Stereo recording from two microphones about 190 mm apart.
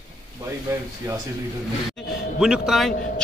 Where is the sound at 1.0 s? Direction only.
20° right (ahead or behind).